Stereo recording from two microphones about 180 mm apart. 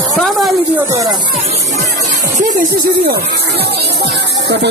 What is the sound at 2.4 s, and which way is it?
Speech, 50° right (ahead or behind).